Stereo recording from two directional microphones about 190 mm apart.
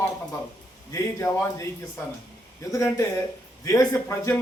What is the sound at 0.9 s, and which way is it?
Speech, 15° left (ahead or behind).